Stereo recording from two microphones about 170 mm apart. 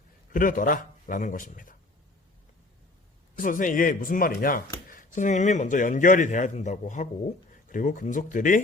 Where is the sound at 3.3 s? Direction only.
50° left (ahead or behind).